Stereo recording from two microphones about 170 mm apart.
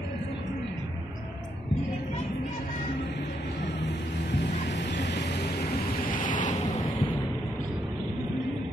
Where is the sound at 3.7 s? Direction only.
90° left; by 6.5 s 50° left (ahead or behind).